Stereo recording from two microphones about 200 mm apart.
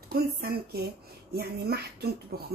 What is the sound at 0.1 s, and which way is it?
Speech, 50° right (ahead or behind).